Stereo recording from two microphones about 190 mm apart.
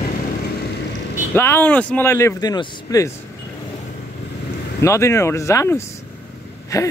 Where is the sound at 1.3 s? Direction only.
10° left (ahead or behind).